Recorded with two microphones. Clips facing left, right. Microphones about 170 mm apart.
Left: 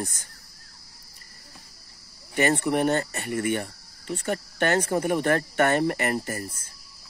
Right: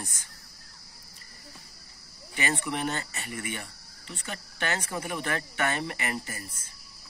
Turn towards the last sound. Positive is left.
turn(degrees=50)  # may be behind; listen again after turning